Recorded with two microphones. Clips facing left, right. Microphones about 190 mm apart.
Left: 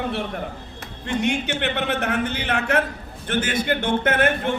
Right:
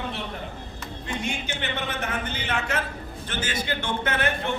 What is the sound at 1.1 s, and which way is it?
A man's voice, 65° left (ahead or behind).